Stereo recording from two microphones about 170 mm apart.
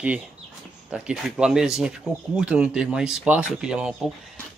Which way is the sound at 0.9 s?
5° right (ahead or behind).